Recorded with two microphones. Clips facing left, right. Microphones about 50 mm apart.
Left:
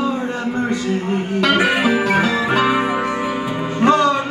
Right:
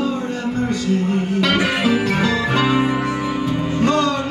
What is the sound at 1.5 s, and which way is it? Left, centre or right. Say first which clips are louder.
Music: left 3 dB; centre.